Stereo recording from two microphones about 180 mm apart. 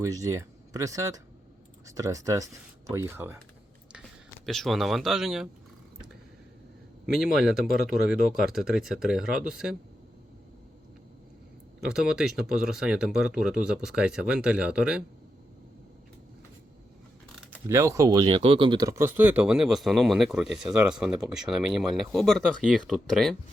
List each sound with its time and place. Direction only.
0.0 s speech: 20° right (ahead or behind)
4.4 s speech: centre (ahead or behind)
7.0 s speech: centre (ahead or behind)
11.8 s speech: 5° right (ahead or behind)
17.7 s speech: 15° right (ahead or behind); by 23.3 s centre (ahead or behind)